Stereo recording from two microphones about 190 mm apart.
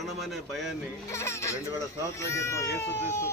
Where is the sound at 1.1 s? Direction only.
15° left (ahead or behind).